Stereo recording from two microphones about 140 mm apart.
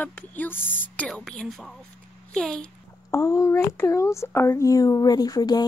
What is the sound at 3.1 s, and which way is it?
Speech, 20° left (ahead or behind).